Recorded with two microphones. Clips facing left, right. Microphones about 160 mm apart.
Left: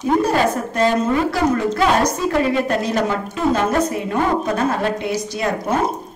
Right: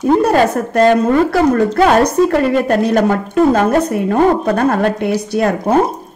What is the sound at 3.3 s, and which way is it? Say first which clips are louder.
A woman's voice: right 7 dB; 55° right (ahead or behind).